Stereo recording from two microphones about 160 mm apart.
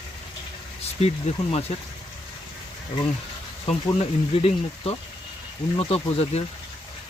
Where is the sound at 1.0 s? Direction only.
40° left (ahead or behind).